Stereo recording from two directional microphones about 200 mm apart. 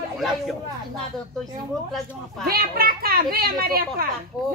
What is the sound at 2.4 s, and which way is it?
A child's voice, 50° right (ahead or behind).